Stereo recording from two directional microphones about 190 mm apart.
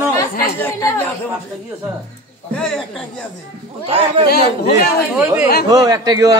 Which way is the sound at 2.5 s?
5° left (ahead or behind).